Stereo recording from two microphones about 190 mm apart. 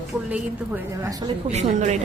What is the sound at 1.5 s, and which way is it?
Speech, 35° right (ahead or behind).